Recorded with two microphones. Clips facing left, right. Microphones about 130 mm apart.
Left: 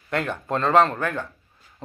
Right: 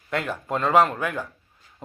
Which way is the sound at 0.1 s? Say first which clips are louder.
Left 1 dB; 5° right (ahead or behind).